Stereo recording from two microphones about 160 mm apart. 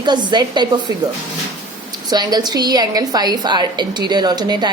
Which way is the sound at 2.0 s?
25° right (ahead or behind).